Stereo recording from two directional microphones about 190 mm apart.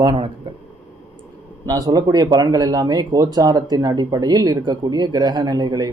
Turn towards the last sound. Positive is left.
turn(degrees=-20)  # may be behind; listen again after turning